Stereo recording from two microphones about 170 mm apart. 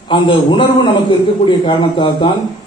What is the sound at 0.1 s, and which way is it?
Speech, 30° left (ahead or behind).